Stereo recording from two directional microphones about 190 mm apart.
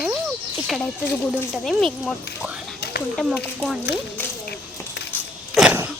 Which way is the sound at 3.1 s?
10° left (ahead or behind).